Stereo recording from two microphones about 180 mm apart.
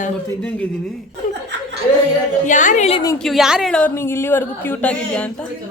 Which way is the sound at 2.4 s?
45° left (ahead or behind).